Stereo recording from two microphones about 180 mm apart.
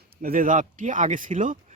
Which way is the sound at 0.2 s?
50° right (ahead or behind).